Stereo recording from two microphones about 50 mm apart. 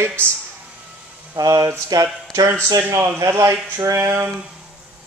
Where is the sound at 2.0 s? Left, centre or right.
Right.